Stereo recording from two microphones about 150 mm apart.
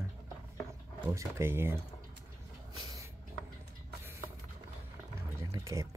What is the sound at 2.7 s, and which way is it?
Vehicle, 25° right (ahead or behind).